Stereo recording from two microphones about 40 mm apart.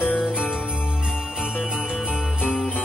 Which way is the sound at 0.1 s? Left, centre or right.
Left.